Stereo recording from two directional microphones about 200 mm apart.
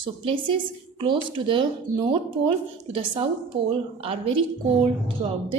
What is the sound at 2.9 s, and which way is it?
Speech, 25° right (ahead or behind).